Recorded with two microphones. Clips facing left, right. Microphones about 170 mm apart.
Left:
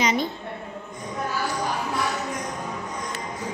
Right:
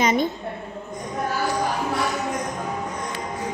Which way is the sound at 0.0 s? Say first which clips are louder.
Right 3 dB; 50° right (ahead or behind).